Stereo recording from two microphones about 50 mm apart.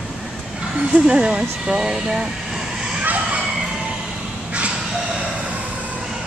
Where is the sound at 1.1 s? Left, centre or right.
Centre.